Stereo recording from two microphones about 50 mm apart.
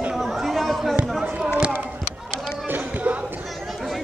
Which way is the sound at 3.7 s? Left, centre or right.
Centre.